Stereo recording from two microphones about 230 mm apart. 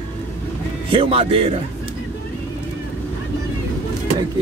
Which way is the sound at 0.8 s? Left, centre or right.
Right.